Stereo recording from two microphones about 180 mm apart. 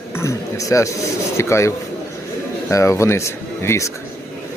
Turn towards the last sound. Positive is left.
turn(degrees=15)  # may be behind; listen again after turning